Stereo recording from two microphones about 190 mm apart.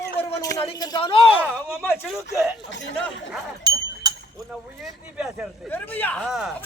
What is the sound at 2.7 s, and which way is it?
Speech, 75° left (ahead or behind).